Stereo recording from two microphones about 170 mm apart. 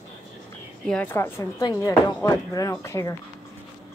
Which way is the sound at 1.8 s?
25° left (ahead or behind).